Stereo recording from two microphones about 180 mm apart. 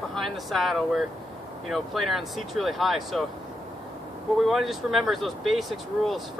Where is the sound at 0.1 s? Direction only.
Centre (ahead or behind).